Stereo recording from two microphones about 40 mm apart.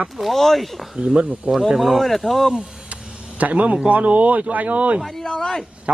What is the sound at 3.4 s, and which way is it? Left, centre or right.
Speech, right.